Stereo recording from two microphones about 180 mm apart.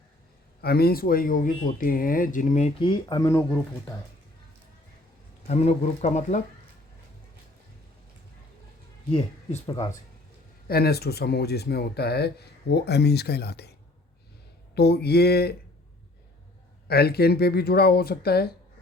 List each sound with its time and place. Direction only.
0.6 s speech: 60° left (ahead or behind); by 2.9 s 40° left (ahead or behind)
2.9 s speech: 20° left (ahead or behind)
5.5 s speech: 35° left (ahead or behind)
9.6 s speech: 25° left (ahead or behind)
10.7 s speech: 60° left (ahead or behind)
14.8 s speech: 65° left (ahead or behind)
16.9 s speech: 60° left (ahead or behind)